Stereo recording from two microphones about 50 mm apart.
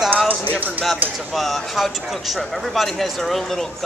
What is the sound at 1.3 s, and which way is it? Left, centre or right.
Speech, centre.